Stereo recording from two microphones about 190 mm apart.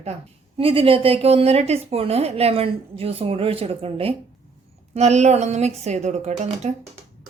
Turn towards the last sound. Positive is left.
turn(degrees=-35)  # may be behind; listen again after turning